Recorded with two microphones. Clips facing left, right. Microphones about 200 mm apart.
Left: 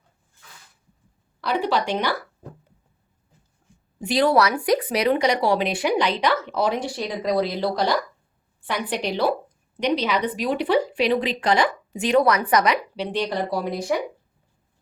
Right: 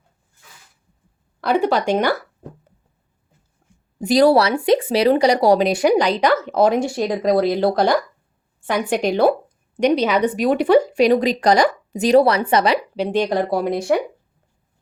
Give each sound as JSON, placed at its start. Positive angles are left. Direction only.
{"t": 1.4, "sound": "a woman's voice", "side_deg": -50}
{"t": 4.0, "sound": "a woman's voice", "side_deg": -40}